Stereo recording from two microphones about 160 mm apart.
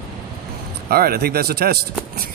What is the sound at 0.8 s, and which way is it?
Speech, 75° right (ahead or behind).